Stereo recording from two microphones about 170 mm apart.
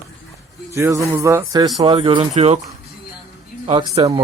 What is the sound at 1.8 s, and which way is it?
Speech, 30° right (ahead or behind).